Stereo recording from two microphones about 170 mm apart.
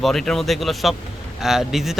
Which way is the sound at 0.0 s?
Centre (ahead or behind).